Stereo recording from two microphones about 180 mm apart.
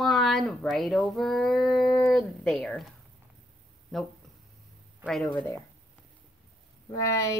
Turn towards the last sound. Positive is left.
turn(degrees=20)  # may be behind; listen again after turning